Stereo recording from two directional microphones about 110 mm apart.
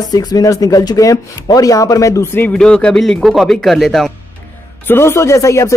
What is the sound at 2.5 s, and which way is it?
Speech, 10° left (ahead or behind).